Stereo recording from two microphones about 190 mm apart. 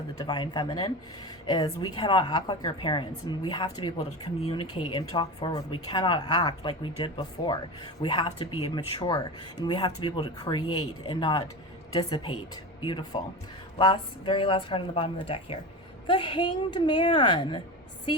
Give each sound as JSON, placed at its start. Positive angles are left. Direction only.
{"t": 0.2, "sound": "a woman's voice", "side_deg": 25}